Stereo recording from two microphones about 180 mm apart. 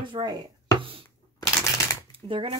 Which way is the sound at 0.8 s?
30° right (ahead or behind).